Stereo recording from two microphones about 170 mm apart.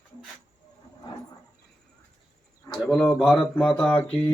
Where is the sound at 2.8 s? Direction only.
Centre (ahead or behind).